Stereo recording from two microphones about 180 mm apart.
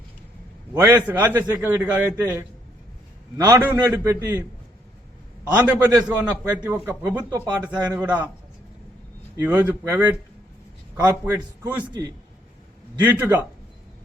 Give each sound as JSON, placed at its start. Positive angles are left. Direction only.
{"t": 1.0, "sound": "a man's voice", "side_deg": -10}
{"t": 3.3, "sound": "a man's voice", "side_deg": -15}
{"t": 5.5, "sound": "a man's voice", "side_deg": -10}
{"t": 9.3, "sound": "a man's voice", "side_deg": -10}
{"t": 13.0, "sound": "a man's voice", "side_deg": -10}